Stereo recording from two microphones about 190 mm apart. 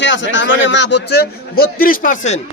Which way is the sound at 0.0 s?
75° left (ahead or behind).